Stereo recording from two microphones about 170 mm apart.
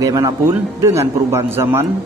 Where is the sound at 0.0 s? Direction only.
20° right (ahead or behind).